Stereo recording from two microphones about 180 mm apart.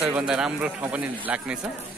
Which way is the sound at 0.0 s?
5° right (ahead or behind).